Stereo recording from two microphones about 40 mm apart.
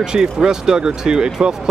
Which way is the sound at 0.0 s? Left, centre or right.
Centre.